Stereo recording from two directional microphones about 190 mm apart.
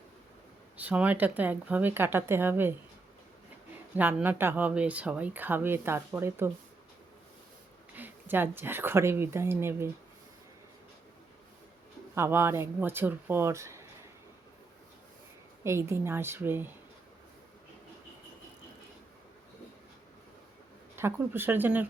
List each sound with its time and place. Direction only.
0.8 s speech: 5° right (ahead or behind)
3.9 s speech: 10° right (ahead or behind)
7.9 s speech: 10° right (ahead or behind)
12.1 s speech: 10° right (ahead or behind)
15.6 s speech: 15° right (ahead or behind)
20.9 s speech: 10° right (ahead or behind)